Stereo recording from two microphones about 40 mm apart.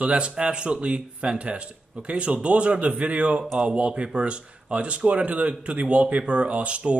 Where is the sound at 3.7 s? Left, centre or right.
Right.